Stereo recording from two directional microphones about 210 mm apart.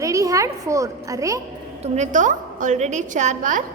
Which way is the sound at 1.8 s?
35° right (ahead or behind).